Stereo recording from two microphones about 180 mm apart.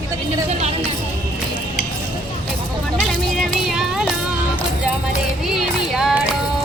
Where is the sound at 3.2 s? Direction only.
Centre (ahead or behind).